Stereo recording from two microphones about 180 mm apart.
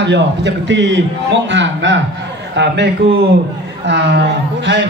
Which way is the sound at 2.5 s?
70° right (ahead or behind).